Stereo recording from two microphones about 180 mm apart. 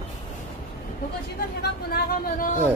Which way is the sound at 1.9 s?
55° left (ahead or behind).